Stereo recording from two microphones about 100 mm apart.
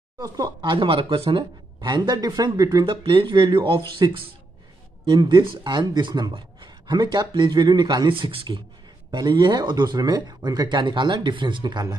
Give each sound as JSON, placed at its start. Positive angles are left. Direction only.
{"t": 0.2, "sound": "speech", "side_deg": -45}
{"t": 2.8, "sound": "speech", "side_deg": -55}
{"t": 5.0, "sound": "speech", "side_deg": -45}